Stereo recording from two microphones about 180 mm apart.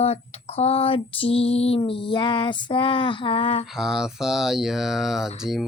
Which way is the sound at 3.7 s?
Centre (ahead or behind).